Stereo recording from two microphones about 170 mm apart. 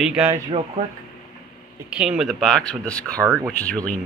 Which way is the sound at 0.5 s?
40° right (ahead or behind).